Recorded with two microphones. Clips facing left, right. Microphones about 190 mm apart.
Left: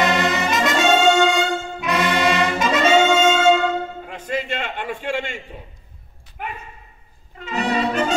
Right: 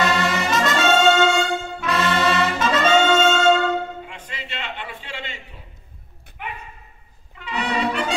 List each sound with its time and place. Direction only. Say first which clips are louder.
0.0 s brass instrument: left 2 dB; 20° left (ahead or behind)
4.0 s a sound: left 10 dB; 45° left (ahead or behind)
7.3 s brass instrument: left 3 dB; 40° left (ahead or behind)